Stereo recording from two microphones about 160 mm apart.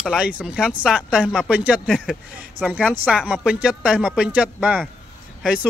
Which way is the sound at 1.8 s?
5° left (ahead or behind).